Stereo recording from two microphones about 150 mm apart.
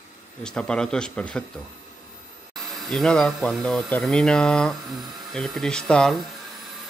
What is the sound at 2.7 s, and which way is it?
Speech, 5° left (ahead or behind).